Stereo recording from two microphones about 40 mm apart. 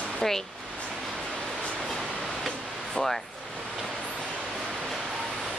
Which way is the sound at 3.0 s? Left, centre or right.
Centre.